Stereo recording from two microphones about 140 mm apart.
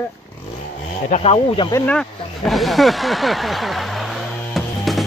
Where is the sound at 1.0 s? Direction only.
50° left (ahead or behind).